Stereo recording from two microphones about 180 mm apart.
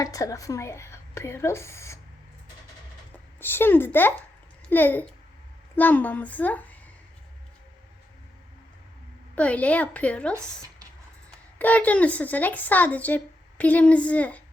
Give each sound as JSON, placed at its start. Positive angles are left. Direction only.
{"t": 0.0, "sound": "speech", "side_deg": 20}
{"t": 3.1, "sound": "speech", "side_deg": 10}
{"t": 9.3, "sound": "speech", "side_deg": 5}
{"t": 10.3, "sound": "speech", "side_deg": -15}
{"t": 11.5, "sound": "speech", "side_deg": 10}